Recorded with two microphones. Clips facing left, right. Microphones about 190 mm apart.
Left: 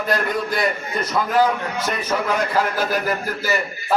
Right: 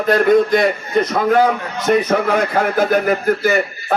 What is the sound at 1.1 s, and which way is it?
A man's voice, 55° right (ahead or behind).